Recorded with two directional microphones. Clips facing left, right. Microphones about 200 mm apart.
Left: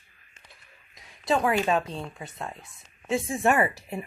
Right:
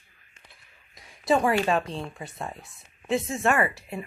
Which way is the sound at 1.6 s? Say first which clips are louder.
Even; 5° left (ahead or behind).